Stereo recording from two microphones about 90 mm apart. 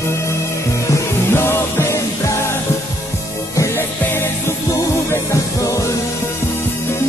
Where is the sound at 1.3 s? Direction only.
25° left (ahead or behind).